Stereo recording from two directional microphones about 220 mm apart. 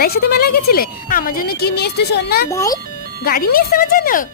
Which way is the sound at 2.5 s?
15° left (ahead or behind).